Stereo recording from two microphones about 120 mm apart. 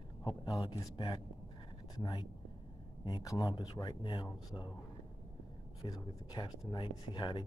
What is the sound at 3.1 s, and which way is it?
Speech, 35° left (ahead or behind).